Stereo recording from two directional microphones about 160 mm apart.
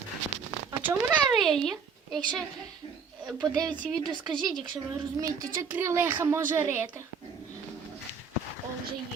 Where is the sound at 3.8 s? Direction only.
5° left (ahead or behind).